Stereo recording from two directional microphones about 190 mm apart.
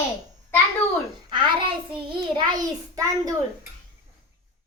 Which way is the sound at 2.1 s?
25° right (ahead or behind).